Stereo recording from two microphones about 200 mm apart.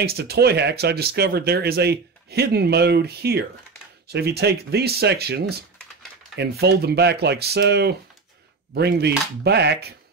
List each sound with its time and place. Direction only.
0.0 s speech: 50° right (ahead or behind)